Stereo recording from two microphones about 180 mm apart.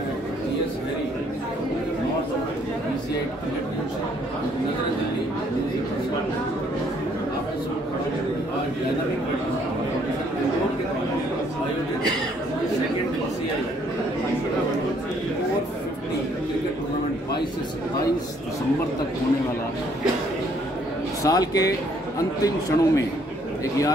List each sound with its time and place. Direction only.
21.2 s speech: 20° left (ahead or behind)